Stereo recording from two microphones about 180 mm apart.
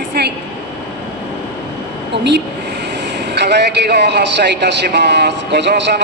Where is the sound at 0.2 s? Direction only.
60° right (ahead or behind).